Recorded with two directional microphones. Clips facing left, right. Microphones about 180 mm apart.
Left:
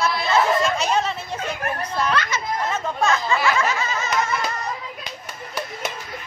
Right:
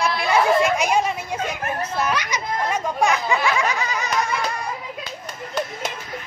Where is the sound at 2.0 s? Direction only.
15° right (ahead or behind).